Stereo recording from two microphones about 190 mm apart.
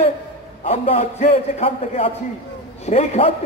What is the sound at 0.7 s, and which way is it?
A man's voice, 30° left (ahead or behind).